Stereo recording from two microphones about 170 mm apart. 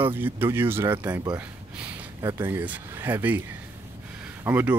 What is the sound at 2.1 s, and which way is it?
Speech, 15° right (ahead or behind).